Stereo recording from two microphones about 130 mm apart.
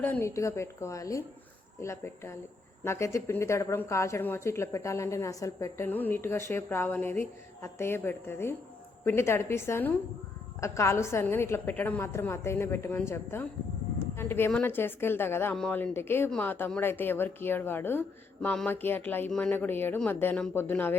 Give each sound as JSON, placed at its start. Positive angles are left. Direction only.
{"t": 0.0, "sound": "a woman's voice", "side_deg": 15}